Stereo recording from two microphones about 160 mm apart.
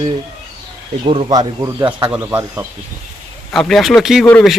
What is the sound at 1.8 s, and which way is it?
Speech, 10° right (ahead or behind).